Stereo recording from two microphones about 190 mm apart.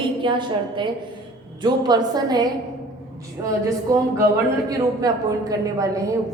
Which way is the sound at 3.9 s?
15° right (ahead or behind).